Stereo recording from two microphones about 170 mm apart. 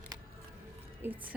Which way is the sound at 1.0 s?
10° right (ahead or behind).